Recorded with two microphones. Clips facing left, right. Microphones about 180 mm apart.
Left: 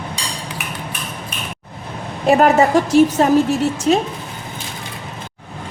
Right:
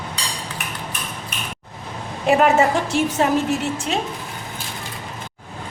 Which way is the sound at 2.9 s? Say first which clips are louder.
Left 10 dB; 40° left (ahead or behind).